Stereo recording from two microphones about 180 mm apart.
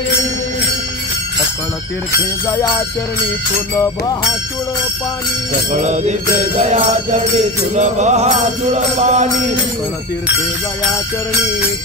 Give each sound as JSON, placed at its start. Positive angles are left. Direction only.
{"t": 2.4, "sound": "music", "side_deg": 15}
{"t": 3.7, "sound": "music", "side_deg": 20}
{"t": 5.7, "sound": "music", "side_deg": -40}
{"t": 7.3, "sound": "music", "side_deg": -40}